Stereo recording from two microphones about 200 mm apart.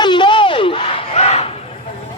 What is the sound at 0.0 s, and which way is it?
Battle cry, 25° left (ahead or behind).